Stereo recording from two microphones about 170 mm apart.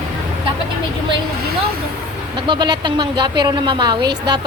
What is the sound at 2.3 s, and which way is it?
Speech, 30° right (ahead or behind).